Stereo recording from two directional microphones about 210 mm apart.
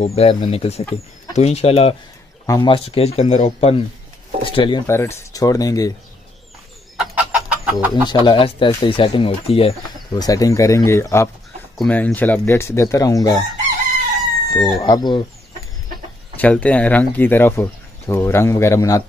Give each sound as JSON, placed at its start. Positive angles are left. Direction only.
{"t": 0.0, "sound": "speech", "side_deg": 30}
{"t": 7.0, "sound": "chicken", "side_deg": -5}
{"t": 7.9, "sound": "speech", "side_deg": 20}
{"t": 14.5, "sound": "speech", "side_deg": 15}
{"t": 16.3, "sound": "speech", "side_deg": 5}